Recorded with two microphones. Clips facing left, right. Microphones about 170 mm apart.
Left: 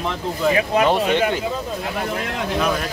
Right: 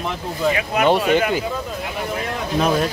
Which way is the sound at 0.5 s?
30° left (ahead or behind).